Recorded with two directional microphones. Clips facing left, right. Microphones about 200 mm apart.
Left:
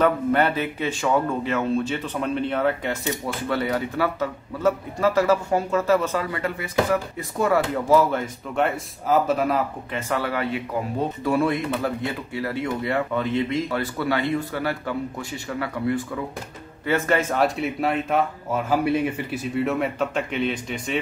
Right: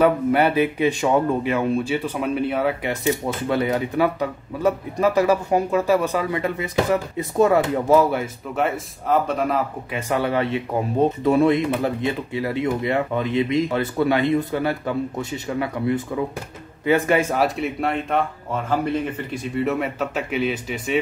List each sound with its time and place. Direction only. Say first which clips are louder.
0.0 s speech: right 3 dB; 10° right (ahead or behind)
9.9 s speech: right 4 dB; 15° right (ahead or behind)